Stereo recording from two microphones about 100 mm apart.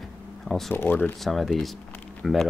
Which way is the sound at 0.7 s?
20° left (ahead or behind).